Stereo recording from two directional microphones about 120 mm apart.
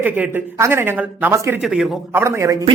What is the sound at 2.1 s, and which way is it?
Speech, 20° right (ahead or behind).